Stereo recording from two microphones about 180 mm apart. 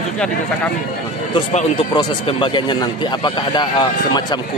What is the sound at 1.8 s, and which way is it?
Speech, 25° left (ahead or behind).